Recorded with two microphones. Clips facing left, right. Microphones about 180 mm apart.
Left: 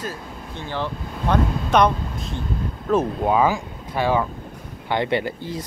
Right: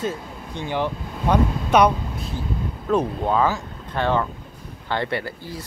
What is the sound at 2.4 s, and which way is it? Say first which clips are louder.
Speech: even; centre (ahead or behind).